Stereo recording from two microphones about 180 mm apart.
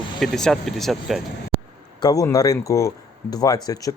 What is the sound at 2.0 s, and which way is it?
Speech, 20° left (ahead or behind).